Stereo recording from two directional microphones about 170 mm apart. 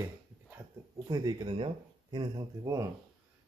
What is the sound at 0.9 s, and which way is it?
Speech, 20° right (ahead or behind).